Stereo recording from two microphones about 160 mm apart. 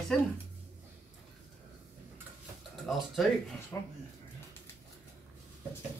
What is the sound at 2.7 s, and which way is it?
Speech, centre (ahead or behind).